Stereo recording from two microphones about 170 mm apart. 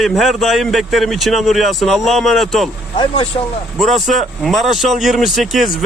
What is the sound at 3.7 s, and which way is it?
Speech, centre (ahead or behind).